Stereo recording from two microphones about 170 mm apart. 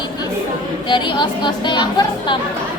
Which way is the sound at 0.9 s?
25° left (ahead or behind).